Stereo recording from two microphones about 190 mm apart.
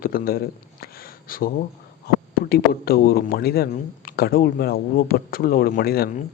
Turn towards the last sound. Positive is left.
turn(degrees=55)  # may be behind; listen again after turning